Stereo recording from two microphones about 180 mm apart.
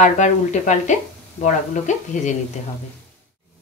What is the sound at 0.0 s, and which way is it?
Speech, 40° left (ahead or behind).